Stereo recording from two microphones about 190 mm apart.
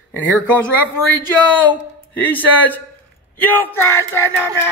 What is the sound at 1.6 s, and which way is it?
Speech, 10° left (ahead or behind).